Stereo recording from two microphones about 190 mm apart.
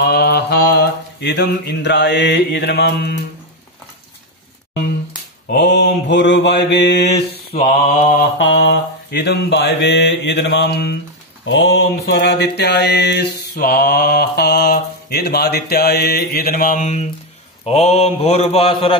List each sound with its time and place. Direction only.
0.0 s mantra: 55° left (ahead or behind)
5.5 s mantra: 65° left (ahead or behind)
7.1 s mantra: 35° left (ahead or behind)
8.4 s mantra: 65° left (ahead or behind)
11.4 s mantra: 70° left (ahead or behind); by 18.9 s 30° left (ahead or behind)